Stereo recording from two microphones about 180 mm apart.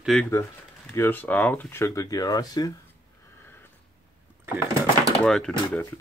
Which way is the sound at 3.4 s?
10° left (ahead or behind).